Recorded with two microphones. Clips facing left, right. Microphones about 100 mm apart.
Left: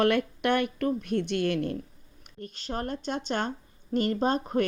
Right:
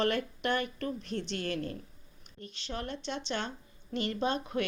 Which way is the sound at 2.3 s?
45° left (ahead or behind).